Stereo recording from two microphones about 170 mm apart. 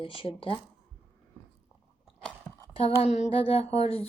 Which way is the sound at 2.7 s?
35° left (ahead or behind).